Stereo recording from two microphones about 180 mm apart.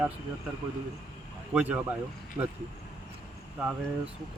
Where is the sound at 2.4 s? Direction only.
25° right (ahead or behind).